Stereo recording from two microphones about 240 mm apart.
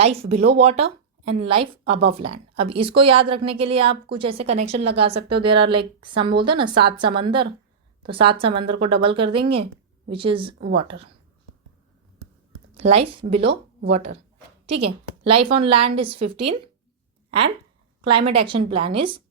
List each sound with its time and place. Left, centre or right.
0.0 s a woman's voice: right
12.7 s a sound: right
13.1 s a woman's voice: right
18.0 s a woman's voice: right